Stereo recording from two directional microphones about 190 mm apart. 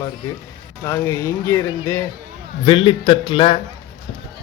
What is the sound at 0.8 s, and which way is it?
Speech, 15° left (ahead or behind).